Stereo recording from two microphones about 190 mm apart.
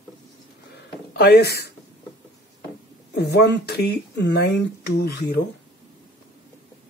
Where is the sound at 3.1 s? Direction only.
60° left (ahead or behind).